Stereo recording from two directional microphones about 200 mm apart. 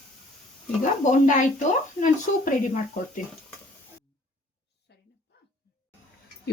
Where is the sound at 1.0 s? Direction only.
40° left (ahead or behind).